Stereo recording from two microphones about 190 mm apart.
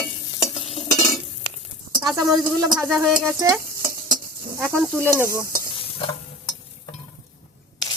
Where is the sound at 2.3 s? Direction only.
20° right (ahead or behind).